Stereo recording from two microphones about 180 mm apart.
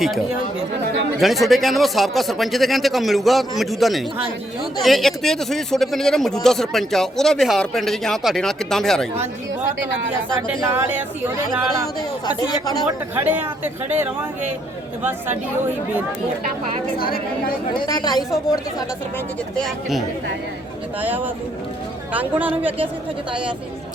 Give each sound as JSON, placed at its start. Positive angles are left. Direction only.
{"t": 1.2, "sound": "speech", "side_deg": 0}
{"t": 10.6, "sound": "speech", "side_deg": -15}
{"t": 12.2, "sound": "a woman's voice", "side_deg": 20}
{"t": 12.9, "sound": "speech", "side_deg": -10}
{"t": 17.0, "sound": "a woman's voice", "side_deg": 55}
{"t": 17.7, "sound": "a woman's voice", "side_deg": 20}
{"t": 19.5, "sound": "speech", "side_deg": 0}
{"t": 22.1, "sound": "speech", "side_deg": -10}